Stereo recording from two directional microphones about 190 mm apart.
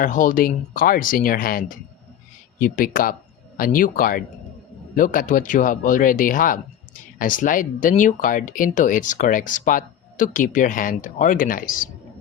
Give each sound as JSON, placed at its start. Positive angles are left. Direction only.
{"t": 0.0, "sound": "speech", "side_deg": 45}